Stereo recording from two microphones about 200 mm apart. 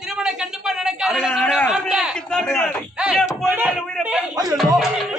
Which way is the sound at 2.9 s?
5° right (ahead or behind).